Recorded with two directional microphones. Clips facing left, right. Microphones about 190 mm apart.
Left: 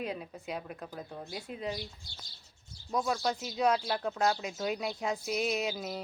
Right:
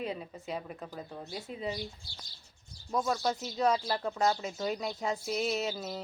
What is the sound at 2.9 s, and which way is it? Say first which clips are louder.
Speech: right 1 dB; centre (ahead or behind).